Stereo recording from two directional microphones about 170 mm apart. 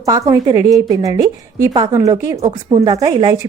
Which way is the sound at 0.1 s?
20° right (ahead or behind).